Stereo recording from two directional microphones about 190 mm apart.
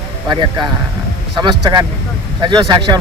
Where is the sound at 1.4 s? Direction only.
20° right (ahead or behind).